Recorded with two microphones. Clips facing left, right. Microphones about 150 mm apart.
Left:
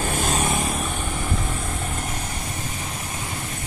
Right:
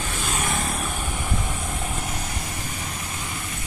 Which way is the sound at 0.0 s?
45° left (ahead or behind).